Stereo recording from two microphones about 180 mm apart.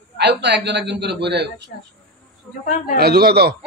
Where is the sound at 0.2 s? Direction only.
75° right (ahead or behind).